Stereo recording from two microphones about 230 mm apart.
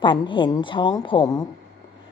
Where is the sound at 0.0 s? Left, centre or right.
Left.